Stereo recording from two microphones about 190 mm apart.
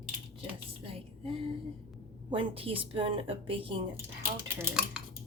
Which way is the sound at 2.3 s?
30° right (ahead or behind).